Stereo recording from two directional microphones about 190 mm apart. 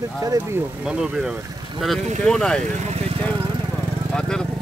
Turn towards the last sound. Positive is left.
turn(degrees=5)  # may be behind; listen again after turning